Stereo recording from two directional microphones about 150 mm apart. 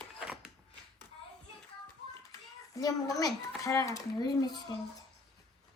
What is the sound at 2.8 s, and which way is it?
Speech, 25° left (ahead or behind).